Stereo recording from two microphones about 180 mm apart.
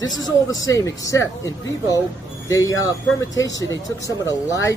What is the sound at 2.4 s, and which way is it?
Speech, 20° left (ahead or behind).